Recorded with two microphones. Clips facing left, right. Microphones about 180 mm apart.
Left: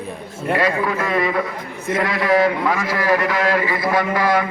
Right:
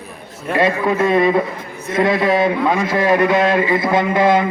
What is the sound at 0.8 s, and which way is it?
A man's voice, 25° right (ahead or behind).